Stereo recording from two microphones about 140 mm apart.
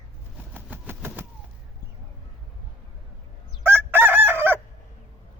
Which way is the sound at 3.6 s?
15° right (ahead or behind).